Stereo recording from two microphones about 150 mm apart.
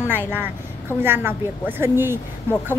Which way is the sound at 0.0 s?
15° right (ahead or behind).